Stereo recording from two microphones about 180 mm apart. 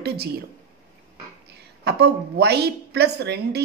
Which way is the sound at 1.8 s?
65° right (ahead or behind).